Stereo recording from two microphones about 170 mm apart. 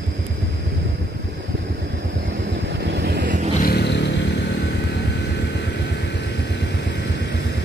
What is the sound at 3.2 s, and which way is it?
Vehicle, 50° right (ahead or behind).